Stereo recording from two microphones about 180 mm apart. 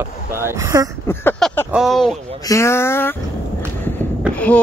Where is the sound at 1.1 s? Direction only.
15° left (ahead or behind).